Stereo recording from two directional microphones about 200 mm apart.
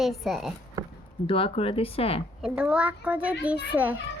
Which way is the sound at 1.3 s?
30° left (ahead or behind).